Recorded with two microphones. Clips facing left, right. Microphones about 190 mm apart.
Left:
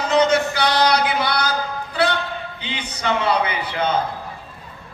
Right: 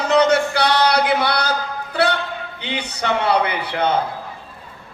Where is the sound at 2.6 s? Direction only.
65° right (ahead or behind).